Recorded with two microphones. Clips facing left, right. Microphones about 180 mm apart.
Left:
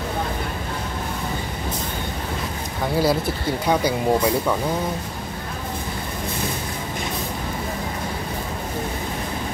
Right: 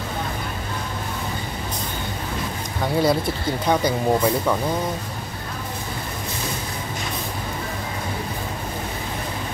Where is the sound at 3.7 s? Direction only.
10° left (ahead or behind).